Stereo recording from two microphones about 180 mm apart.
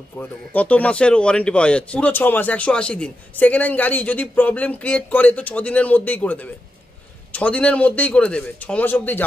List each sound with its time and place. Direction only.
0.2 s a man's voice: 10° left (ahead or behind)